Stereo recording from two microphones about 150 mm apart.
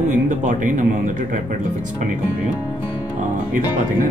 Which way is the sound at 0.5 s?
60° right (ahead or behind).